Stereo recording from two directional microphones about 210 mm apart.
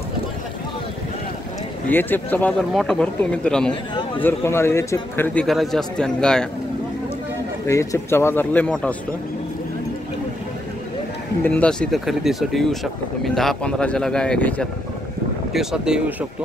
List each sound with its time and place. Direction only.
1.9 s a man's voice: 10° left (ahead or behind)
7.6 s a man's voice: 15° left (ahead or behind)
11.4 s speech: 5° left (ahead or behind)